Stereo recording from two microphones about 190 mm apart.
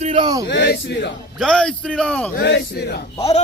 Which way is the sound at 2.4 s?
65° left (ahead or behind).